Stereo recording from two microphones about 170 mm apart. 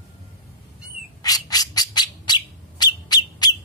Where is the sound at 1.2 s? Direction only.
20° left (ahead or behind).